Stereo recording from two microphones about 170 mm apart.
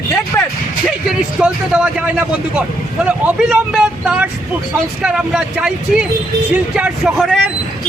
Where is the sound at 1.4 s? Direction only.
5° right (ahead or behind).